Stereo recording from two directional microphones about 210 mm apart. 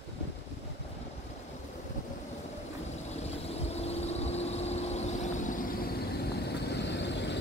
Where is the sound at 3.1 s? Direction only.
30° left (ahead or behind).